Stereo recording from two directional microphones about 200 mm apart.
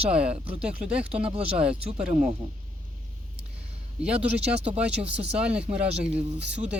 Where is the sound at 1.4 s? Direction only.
30° right (ahead or behind).